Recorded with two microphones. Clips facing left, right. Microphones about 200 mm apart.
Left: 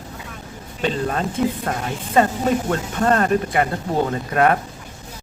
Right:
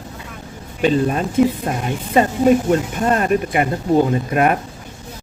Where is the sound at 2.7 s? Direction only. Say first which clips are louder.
Right 2 dB; 15° right (ahead or behind).